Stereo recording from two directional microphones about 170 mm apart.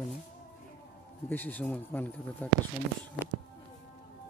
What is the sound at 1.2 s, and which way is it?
Speech, 10° left (ahead or behind).